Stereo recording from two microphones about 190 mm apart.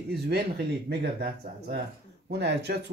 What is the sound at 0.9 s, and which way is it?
Speech, 60° right (ahead or behind).